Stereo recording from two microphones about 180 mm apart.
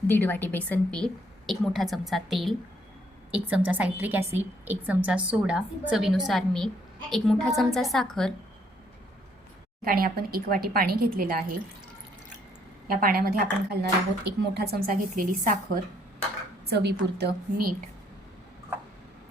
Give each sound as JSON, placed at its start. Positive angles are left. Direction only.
{"t": 0.1, "sound": "a woman's voice", "side_deg": 10}
{"t": 9.8, "sound": "speech", "side_deg": -55}
{"t": 12.9, "sound": "speech", "side_deg": -55}
{"t": 16.6, "sound": "speech", "side_deg": -65}